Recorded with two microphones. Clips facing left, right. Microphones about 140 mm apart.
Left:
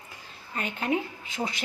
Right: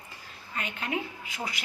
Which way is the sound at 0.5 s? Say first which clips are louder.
Left 5 dB; 35° left (ahead or behind).